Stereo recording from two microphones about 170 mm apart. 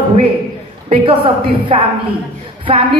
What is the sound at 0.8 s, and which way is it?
A woman's voice, 30° right (ahead or behind).